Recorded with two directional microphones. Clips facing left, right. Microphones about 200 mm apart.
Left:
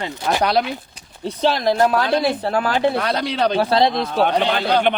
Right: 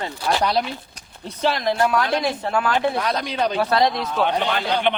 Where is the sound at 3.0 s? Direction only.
70° left (ahead or behind).